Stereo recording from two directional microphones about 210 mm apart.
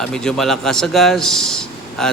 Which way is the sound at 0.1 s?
5° left (ahead or behind).